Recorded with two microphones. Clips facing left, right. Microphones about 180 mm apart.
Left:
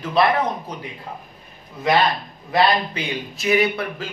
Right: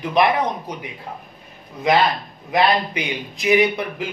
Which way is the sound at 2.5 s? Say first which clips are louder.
Even; 15° right (ahead or behind).